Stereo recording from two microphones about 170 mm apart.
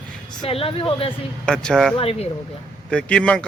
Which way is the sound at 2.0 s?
35° left (ahead or behind).